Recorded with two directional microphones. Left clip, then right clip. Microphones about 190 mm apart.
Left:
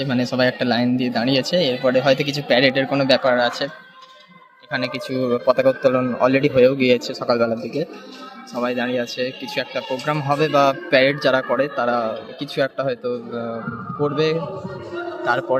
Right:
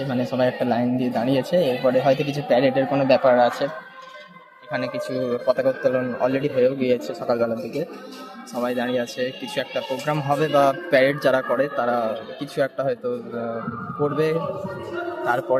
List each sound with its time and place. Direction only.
0.1 s speech: 10° left (ahead or behind)
4.7 s speech: 10° left (ahead or behind)